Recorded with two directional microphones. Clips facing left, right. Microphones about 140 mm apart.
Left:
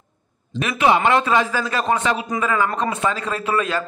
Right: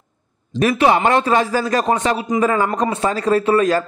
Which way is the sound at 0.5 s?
40° right (ahead or behind).